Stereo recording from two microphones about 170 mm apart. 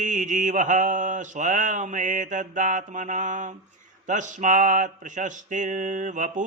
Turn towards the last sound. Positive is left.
turn(degrees=-50)  # may be behind; listen again after turning